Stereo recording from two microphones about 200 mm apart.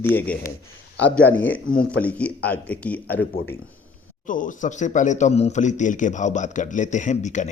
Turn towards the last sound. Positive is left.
turn(degrees=35)  # may be behind; listen again after turning